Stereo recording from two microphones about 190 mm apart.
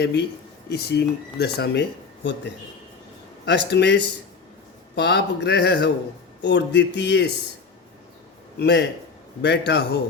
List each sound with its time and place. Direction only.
0.0 s speech: 60° left (ahead or behind)
3.7 s speech: 65° left (ahead or behind)
8.5 s speech: 65° left (ahead or behind)